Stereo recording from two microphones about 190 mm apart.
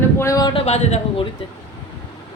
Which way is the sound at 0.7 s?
35° left (ahead or behind).